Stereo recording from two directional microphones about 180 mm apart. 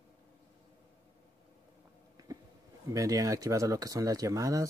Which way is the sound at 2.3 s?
20° right (ahead or behind).